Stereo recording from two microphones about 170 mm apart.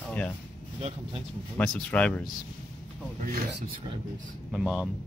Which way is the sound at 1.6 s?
5° left (ahead or behind).